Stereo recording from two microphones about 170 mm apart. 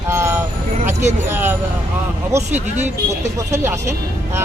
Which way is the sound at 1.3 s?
10° right (ahead or behind).